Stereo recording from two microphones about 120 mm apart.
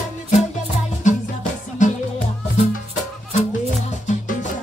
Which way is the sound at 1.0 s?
90° left.